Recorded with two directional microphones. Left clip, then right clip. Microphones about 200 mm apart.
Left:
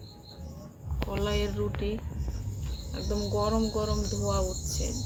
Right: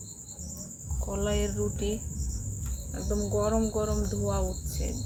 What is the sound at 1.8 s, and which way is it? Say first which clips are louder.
Speech: right 1 dB; 15° right (ahead or behind).